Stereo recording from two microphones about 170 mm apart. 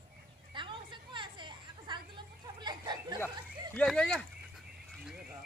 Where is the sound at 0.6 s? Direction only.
30° right (ahead or behind).